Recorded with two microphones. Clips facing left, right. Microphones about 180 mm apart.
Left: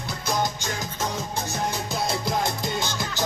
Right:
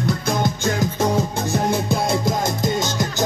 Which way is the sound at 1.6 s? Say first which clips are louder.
Right 7 dB; 50° right (ahead or behind).